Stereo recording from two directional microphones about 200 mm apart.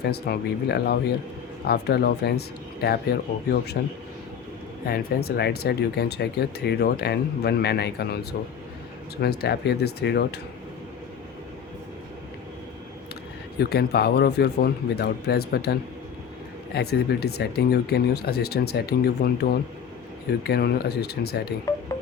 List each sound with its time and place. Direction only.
0.0 s speech: 55° left (ahead or behind)
4.9 s speech: 55° left (ahead or behind)
13.6 s speech: 55° left (ahead or behind)